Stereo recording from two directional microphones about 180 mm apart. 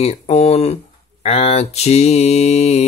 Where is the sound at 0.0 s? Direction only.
35° left (ahead or behind).